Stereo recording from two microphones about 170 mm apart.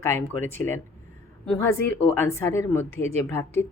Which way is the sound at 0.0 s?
15° left (ahead or behind).